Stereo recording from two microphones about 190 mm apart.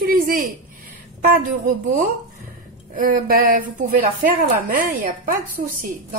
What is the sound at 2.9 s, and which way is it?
A woman's voice, 50° right (ahead or behind).